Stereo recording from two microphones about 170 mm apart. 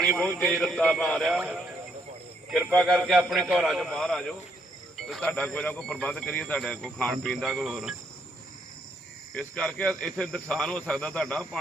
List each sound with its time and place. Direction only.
0.2 s speech: 10° left (ahead or behind)
9.3 s speech: 5° left (ahead or behind)